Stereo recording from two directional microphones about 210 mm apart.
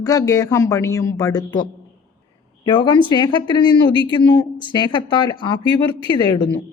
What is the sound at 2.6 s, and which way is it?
Speech, 20° left (ahead or behind).